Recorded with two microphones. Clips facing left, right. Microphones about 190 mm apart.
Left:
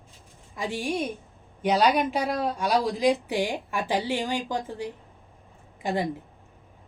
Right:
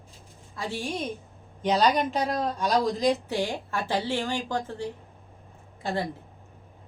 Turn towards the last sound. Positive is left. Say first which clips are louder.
# left 2 dB
turn(degrees=15)  # may be behind; listen again after turning